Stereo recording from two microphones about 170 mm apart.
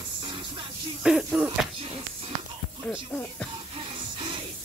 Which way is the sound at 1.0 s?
5° right (ahead or behind).